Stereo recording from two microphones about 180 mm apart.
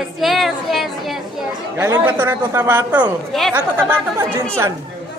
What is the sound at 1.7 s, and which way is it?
A man's voice, 15° right (ahead or behind).